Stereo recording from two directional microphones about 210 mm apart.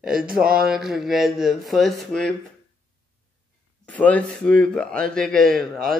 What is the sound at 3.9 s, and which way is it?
Speech, 5° left (ahead or behind).